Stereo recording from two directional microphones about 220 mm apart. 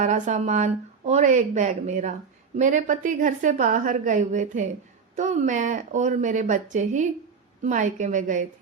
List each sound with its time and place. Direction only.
0.0 s speech: 35° right (ahead or behind)